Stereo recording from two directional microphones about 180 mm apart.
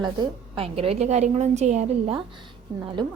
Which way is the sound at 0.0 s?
25° right (ahead or behind).